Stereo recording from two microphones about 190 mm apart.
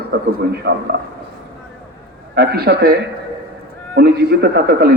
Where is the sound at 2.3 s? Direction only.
55° right (ahead or behind).